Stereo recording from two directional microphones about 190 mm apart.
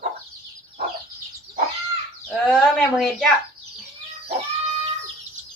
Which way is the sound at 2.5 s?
Centre (ahead or behind).